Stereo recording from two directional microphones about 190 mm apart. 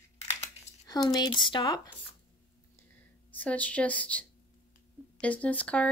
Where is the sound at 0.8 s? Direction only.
20° left (ahead or behind).